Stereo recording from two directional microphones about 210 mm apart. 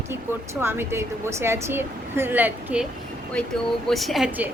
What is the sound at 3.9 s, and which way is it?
Speech, centre (ahead or behind).